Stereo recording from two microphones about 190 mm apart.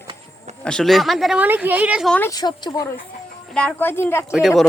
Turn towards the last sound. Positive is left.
turn(degrees=0)  # may be behind; listen again after turning